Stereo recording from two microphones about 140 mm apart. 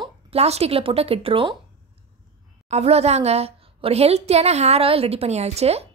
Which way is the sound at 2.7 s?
50° right (ahead or behind).